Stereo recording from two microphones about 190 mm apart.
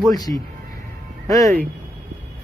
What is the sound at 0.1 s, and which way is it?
Speech, 20° left (ahead or behind).